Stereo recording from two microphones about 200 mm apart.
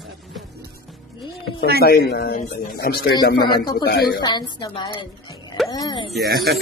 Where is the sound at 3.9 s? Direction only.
50° left (ahead or behind).